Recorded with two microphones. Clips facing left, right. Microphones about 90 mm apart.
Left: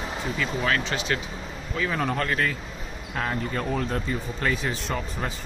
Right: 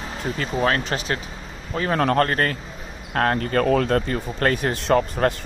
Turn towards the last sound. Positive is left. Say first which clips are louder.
# right 11 dB
turn(degrees=-60)  # may be behind; listen again after turning